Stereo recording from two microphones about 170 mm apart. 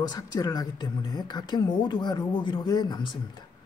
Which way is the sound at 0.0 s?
25° left (ahead or behind).